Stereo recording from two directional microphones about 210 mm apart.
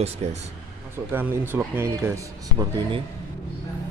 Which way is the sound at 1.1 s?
10° right (ahead or behind).